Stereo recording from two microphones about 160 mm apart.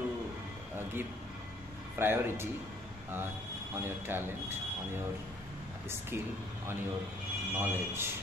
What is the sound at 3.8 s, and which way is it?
Speech, 15° right (ahead or behind).